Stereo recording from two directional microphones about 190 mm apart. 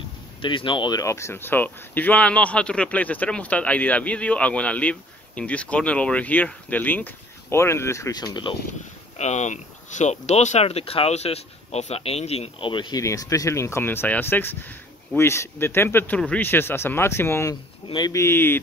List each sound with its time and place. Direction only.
0.4 s speech: 25° left (ahead or behind)
9.2 s speech: 35° left (ahead or behind); by 18.6 s 10° left (ahead or behind)